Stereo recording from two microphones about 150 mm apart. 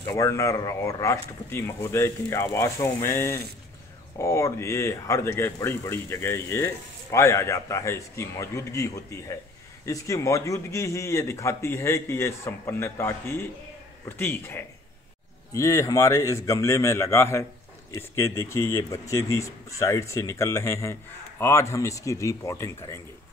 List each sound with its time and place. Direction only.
0.1 s a man's voice: 20° left (ahead or behind)